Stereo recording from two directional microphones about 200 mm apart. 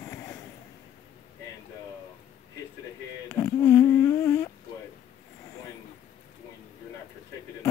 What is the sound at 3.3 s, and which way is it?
Humming, 10° left (ahead or behind).